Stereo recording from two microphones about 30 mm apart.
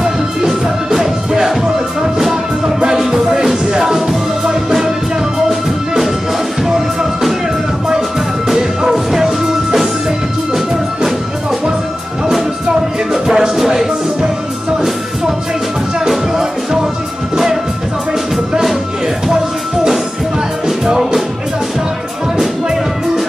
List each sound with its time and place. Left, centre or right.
0.9 s music: centre
6.7 s music: centre
8.5 s music: centre
13.1 s music: centre
20.6 s music: centre